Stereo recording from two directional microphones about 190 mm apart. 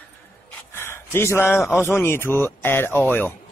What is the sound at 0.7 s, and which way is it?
A man's voice, 15° left (ahead or behind).